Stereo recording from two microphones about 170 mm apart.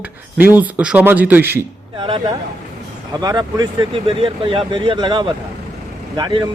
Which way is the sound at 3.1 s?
25° right (ahead or behind).